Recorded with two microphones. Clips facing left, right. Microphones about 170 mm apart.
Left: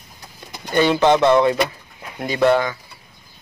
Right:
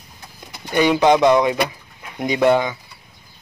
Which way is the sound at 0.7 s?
10° right (ahead or behind).